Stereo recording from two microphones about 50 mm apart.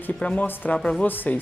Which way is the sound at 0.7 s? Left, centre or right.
Centre.